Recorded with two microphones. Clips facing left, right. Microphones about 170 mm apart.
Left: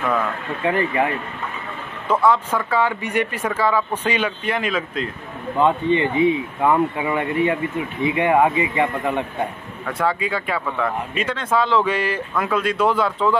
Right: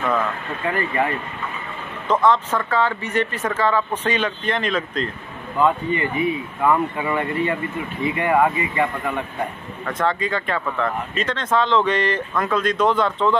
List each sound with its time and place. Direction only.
0.7 s speech: 10° left (ahead or behind)
5.6 s speech: 20° left (ahead or behind)
9.8 s speech: 10° left (ahead or behind)